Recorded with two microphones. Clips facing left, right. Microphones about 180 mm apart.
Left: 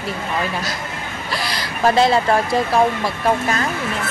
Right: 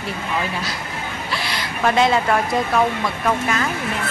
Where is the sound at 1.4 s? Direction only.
35° left (ahead or behind).